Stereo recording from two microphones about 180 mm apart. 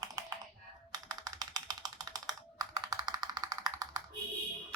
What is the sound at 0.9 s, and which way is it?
Computer keyboard, 20° right (ahead or behind).